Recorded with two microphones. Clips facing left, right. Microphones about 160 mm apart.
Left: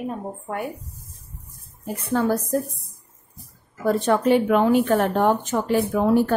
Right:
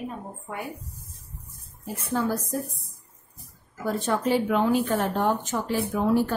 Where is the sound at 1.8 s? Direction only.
60° left (ahead or behind).